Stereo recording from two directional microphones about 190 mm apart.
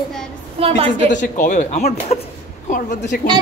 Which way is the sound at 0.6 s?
30° right (ahead or behind).